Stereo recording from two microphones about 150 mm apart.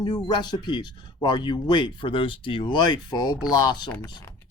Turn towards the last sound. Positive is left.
turn(degrees=25)  # may be behind; listen again after turning